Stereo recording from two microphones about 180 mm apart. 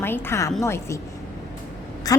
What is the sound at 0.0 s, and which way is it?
Speech, 10° left (ahead or behind).